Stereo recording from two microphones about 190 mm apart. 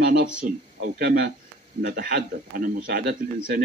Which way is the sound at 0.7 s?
60° right (ahead or behind).